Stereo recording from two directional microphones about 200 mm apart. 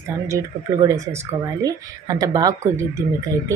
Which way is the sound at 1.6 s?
15° right (ahead or behind).